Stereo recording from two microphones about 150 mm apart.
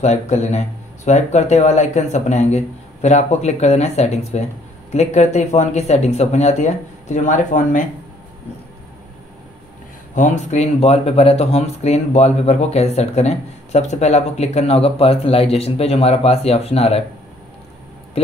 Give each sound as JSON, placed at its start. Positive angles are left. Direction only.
{"t": 0.0, "sound": "speech", "side_deg": 45}
{"t": 10.1, "sound": "speech", "side_deg": 55}